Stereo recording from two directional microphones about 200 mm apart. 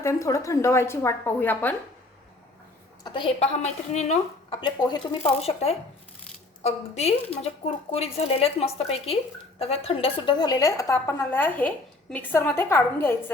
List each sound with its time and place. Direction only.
0.0 s a woman's voice: 15° left (ahead or behind)
3.0 s a woman's voice: 25° left (ahead or behind)